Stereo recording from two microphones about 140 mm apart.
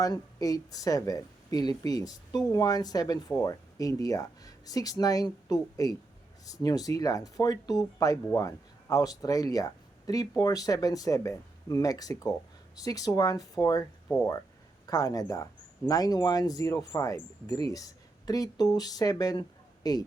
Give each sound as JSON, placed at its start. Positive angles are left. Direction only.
{"t": 0.0, "sound": "speech", "side_deg": 25}
{"t": 14.8, "sound": "speech", "side_deg": 25}